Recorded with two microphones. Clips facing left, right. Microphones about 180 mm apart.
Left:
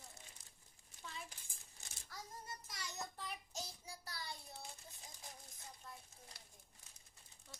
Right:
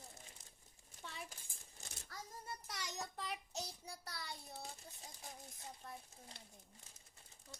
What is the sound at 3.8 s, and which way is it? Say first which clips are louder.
Child singing: right 1 dB; 65° right (ahead or behind).